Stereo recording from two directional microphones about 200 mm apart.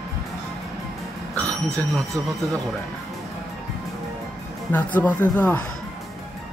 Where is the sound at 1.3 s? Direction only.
15° right (ahead or behind).